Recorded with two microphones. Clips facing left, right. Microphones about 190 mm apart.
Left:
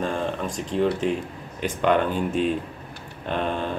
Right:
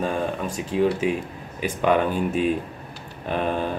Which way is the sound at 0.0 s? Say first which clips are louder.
Right 1 dB; 5° right (ahead or behind).